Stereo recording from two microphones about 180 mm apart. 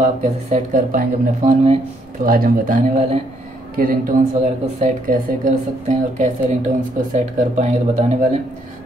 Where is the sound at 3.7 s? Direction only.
50° right (ahead or behind).